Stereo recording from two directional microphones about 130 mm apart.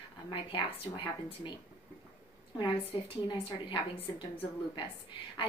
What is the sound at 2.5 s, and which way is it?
A woman's voice, 40° left (ahead or behind).